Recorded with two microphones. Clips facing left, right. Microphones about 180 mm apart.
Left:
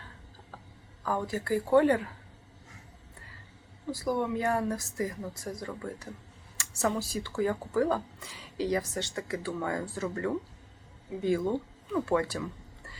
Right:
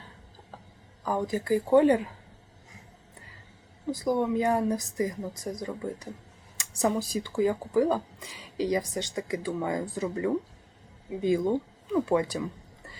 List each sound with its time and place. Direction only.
1.0 s speech: 15° right (ahead or behind)
3.9 s speech: 20° right (ahead or behind)